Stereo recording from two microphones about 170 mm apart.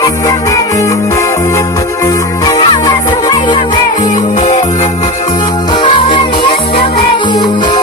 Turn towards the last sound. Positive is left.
turn(degrees=25)  # may be behind; listen again after turning